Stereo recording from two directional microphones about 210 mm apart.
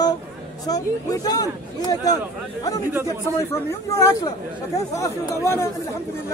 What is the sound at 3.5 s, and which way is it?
Speech, 15° left (ahead or behind).